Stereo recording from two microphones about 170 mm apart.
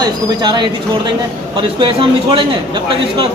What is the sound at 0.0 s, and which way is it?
A man's voice, 25° right (ahead or behind).